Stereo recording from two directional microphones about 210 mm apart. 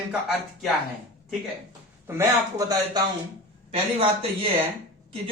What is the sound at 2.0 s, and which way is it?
Speech, 15° right (ahead or behind).